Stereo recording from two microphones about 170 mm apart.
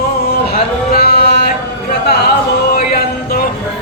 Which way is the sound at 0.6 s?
65° left (ahead or behind).